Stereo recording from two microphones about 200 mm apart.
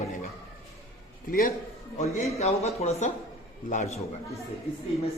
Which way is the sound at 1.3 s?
45° left (ahead or behind).